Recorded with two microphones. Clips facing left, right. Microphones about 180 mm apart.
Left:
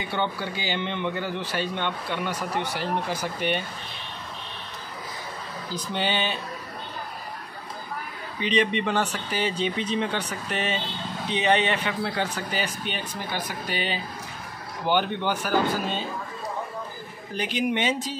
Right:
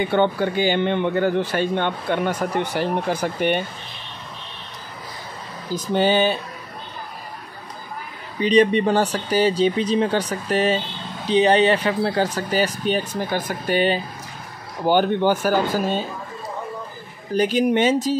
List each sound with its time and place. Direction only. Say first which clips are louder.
0.0 s speech: right 10 dB; 55° right (ahead or behind)
5.9 s speech: right 10 dB; 45° right (ahead or behind)
8.4 s speech: right 8 dB; 40° right (ahead or behind)
17.3 s speech: right 8 dB; 40° right (ahead or behind)